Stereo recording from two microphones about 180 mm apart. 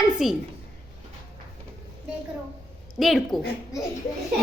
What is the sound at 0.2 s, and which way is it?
Speech, centre (ahead or behind).